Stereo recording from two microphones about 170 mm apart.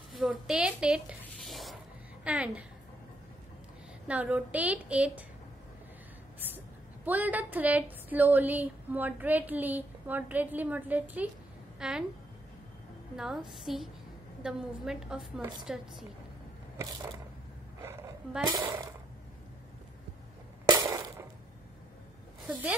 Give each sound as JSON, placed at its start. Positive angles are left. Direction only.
{"t": 0.1, "sound": "a woman's voice", "side_deg": -5}
{"t": 4.1, "sound": "a woman's voice", "side_deg": -10}
{"t": 7.1, "sound": "a woman's voice", "side_deg": -10}
{"t": 13.1, "sound": "a woman's voice", "side_deg": -5}
{"t": 18.4, "sound": "speech", "side_deg": -20}
{"t": 20.6, "sound": "a sound", "side_deg": -25}
{"t": 22.5, "sound": "a woman's voice", "side_deg": -10}